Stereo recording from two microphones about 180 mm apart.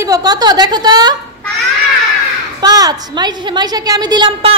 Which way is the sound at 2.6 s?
20° right (ahead or behind).